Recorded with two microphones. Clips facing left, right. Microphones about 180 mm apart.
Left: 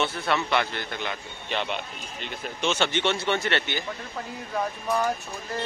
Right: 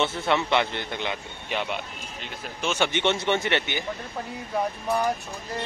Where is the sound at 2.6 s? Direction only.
10° right (ahead or behind).